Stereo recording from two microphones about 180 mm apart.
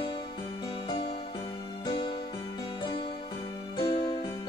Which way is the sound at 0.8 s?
25° left (ahead or behind).